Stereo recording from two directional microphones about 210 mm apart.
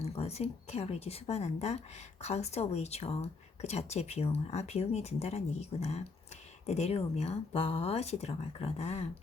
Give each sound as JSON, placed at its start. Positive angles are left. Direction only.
{"t": 0.0, "sound": "speech", "side_deg": 30}